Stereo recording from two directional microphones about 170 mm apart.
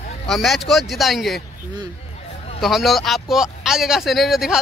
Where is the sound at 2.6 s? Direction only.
Centre (ahead or behind).